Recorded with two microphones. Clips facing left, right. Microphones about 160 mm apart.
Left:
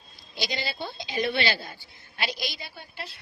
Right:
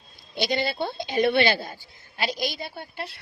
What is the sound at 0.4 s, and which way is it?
A woman's voice, 55° right (ahead or behind).